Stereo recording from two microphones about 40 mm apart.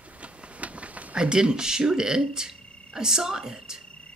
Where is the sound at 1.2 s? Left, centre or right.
Right.